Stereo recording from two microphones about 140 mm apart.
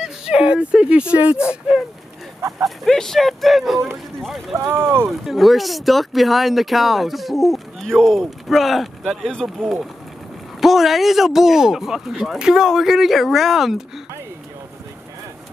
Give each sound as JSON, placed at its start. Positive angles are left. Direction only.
{"t": 0.0, "sound": "speech", "side_deg": -5}
{"t": 4.6, "sound": "speech", "side_deg": -15}
{"t": 5.2, "sound": "speech", "side_deg": 0}